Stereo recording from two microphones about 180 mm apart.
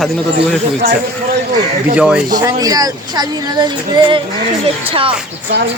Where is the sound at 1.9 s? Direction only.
5° right (ahead or behind).